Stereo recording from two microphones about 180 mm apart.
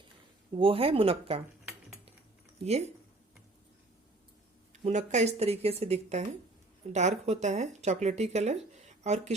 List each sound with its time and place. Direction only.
0.5 s speech: 30° right (ahead or behind)
2.6 s speech: 35° right (ahead or behind)
4.7 s speech: 40° right (ahead or behind)